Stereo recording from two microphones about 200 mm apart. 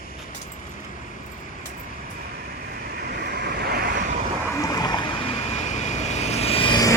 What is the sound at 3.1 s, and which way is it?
Vehicle, 55° right (ahead or behind).